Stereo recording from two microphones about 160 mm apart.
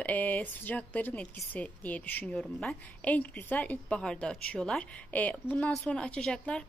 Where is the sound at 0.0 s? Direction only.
10° left (ahead or behind).